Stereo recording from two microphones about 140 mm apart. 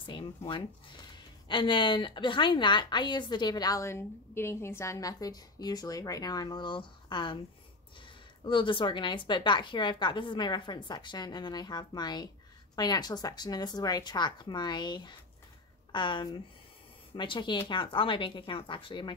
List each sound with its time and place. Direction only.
0.0 s a sound: 35° left (ahead or behind)
1.1 s speech: 35° left (ahead or behind)
8.5 s a woman's voice: 35° left (ahead or behind)